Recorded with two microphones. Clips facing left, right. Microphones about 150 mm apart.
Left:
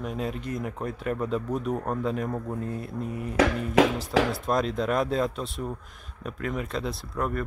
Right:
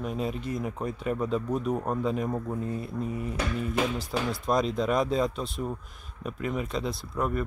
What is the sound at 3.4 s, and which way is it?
Music, 90° left.